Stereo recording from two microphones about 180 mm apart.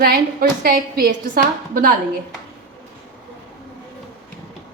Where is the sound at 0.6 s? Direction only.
55° right (ahead or behind).